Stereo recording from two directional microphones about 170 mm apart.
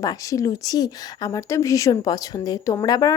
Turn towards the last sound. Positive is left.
turn(degrees=25)  # may be behind; listen again after turning